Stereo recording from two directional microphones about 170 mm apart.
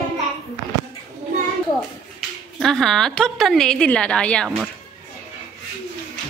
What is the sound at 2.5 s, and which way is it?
A woman's voice, centre (ahead or behind).